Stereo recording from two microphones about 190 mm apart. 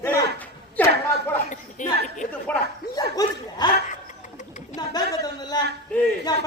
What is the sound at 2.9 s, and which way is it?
Speech, 20° left (ahead or behind).